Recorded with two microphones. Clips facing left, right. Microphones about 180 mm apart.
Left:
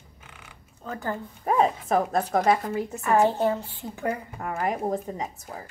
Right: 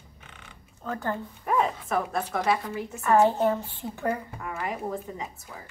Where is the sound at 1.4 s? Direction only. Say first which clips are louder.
Left 4 dB; 35° left (ahead or behind).